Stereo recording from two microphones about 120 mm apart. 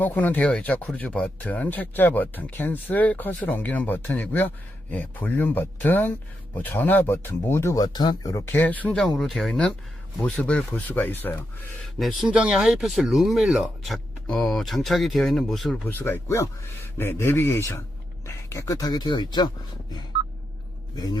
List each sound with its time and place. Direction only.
0.0 s speech: 15° left (ahead or behind)
7.9 s speech: 35° left (ahead or behind)
8.5 s speech: 15° left (ahead or behind)
11.9 s speech: centre (ahead or behind)
15.9 s speech: 15° left (ahead or behind); by 19.5 s 40° left (ahead or behind)